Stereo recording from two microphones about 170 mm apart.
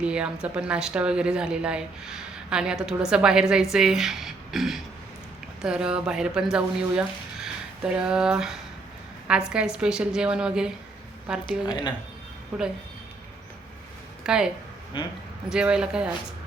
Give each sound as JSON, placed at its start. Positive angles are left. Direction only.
{"t": 0.0, "sound": "a woman's voice", "side_deg": -5}
{"t": 14.3, "sound": "a woman's voice", "side_deg": -5}
{"t": 14.9, "sound": "speech", "side_deg": 30}
{"t": 15.4, "sound": "a woman's voice", "side_deg": -5}